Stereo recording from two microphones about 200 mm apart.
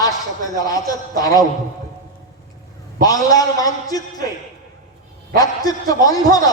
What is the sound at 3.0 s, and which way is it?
A man's voice, 20° left (ahead or behind).